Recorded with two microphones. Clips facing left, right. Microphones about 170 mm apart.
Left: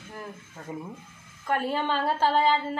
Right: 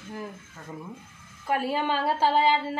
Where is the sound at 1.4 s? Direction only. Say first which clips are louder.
Right 1 dB; 10° right (ahead or behind).